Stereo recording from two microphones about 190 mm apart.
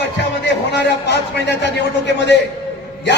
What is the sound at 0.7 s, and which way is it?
A man's voice, 65° left (ahead or behind).